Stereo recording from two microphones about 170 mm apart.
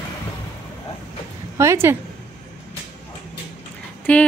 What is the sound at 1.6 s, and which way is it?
Speech, 15° right (ahead or behind).